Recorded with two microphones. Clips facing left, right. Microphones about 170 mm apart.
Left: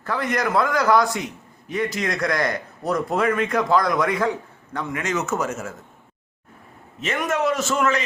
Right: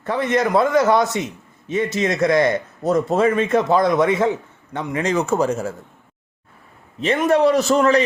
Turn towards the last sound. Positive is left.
turn(degrees=-35)  # may be behind; listen again after turning